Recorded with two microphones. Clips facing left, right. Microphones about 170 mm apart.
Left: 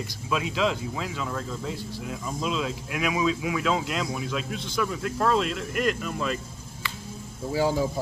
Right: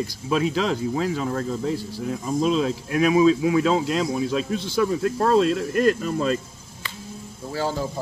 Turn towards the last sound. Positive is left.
turn(degrees=15)  # may be behind; listen again after turning